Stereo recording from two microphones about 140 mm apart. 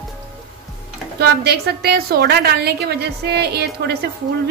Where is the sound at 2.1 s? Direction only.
90° right.